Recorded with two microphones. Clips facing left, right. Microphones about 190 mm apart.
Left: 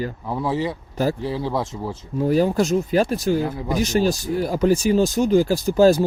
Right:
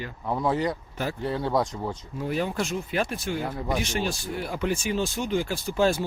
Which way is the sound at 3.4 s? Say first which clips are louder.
Left 4 dB; centre (ahead or behind).